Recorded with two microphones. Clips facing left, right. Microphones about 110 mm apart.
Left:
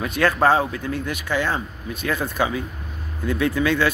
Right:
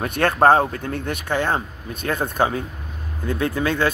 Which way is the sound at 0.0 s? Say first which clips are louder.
Right 2 dB; 55° right (ahead or behind).